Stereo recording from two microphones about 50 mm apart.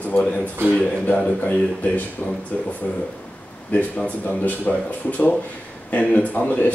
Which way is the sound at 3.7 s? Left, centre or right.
Left.